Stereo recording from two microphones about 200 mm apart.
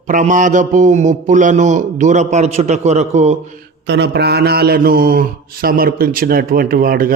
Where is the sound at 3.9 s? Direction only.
55° right (ahead or behind).